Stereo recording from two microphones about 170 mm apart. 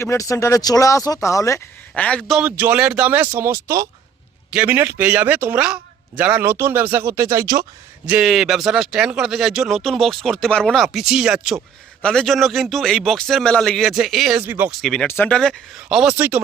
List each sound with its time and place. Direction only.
0.0 s speech: 15° left (ahead or behind)
1.9 s speech: 5° left (ahead or behind)
2.5 s a man's voice: 10° right (ahead or behind)
8.0 s speech: 5° right (ahead or behind)
14.7 s speech: centre (ahead or behind)